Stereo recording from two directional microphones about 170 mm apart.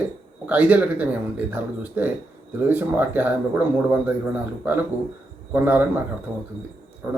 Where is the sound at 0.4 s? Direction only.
10° right (ahead or behind).